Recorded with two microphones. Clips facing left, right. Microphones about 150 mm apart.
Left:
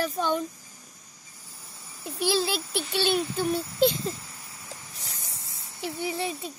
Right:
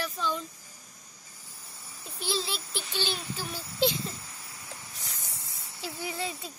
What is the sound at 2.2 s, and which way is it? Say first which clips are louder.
Speech: left 7 dB; 65° left (ahead or behind).